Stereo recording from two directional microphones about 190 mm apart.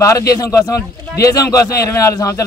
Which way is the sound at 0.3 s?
15° left (ahead or behind).